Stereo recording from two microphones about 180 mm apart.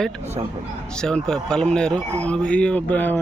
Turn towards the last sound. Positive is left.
turn(degrees=10)  # may be behind; listen again after turning